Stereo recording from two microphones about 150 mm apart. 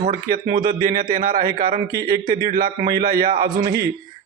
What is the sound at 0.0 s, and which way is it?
A man's voice, 65° right (ahead or behind).